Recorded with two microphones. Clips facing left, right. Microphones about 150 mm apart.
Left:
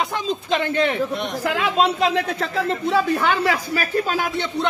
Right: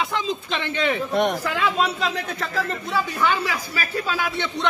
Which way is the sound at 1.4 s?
65° left (ahead or behind).